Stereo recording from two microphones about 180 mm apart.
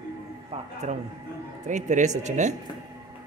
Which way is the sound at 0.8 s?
40° right (ahead or behind).